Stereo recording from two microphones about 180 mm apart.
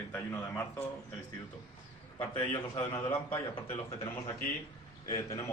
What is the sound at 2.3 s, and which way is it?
Speech, 25° left (ahead or behind).